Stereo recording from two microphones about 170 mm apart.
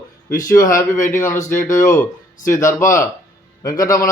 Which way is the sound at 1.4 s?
50° left (ahead or behind).